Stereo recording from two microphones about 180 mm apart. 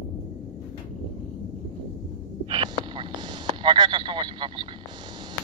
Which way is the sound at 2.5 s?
30° right (ahead or behind).